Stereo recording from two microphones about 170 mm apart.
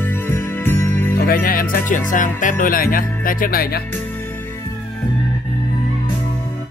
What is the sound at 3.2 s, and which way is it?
Speech, 55° left (ahead or behind).